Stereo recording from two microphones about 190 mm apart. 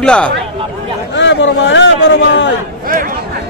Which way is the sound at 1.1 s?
70° left (ahead or behind).